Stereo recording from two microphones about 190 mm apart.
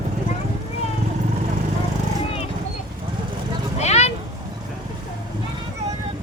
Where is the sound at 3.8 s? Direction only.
35° left (ahead or behind).